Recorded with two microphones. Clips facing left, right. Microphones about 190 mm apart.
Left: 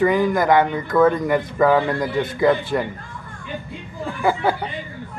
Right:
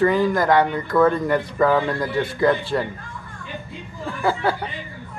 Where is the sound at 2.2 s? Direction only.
20° left (ahead or behind).